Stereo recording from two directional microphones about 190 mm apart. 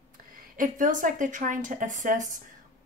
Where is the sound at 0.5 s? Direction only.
45° right (ahead or behind).